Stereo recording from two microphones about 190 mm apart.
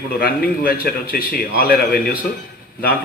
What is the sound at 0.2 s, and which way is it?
A man's voice, 50° left (ahead or behind).